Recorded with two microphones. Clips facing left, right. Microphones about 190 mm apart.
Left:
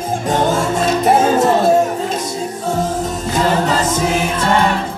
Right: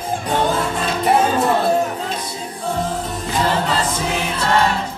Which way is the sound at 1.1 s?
45° left (ahead or behind).